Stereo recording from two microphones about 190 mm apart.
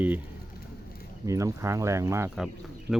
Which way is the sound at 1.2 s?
15° right (ahead or behind).